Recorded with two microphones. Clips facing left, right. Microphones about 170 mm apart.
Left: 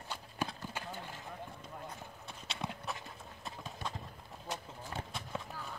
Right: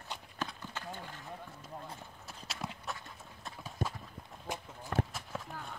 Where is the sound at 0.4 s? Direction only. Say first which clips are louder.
Left 2 dB; 10° left (ahead or behind).